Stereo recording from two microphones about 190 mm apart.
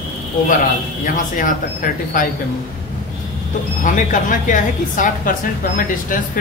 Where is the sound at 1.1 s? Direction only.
45° left (ahead or behind).